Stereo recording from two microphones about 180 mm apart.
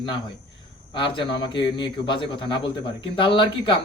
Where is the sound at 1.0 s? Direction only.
25° left (ahead or behind).